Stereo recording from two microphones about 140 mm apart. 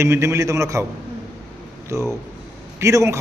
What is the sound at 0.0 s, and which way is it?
Speech, 20° right (ahead or behind).